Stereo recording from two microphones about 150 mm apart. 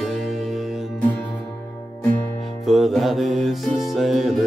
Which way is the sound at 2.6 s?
Centre (ahead or behind).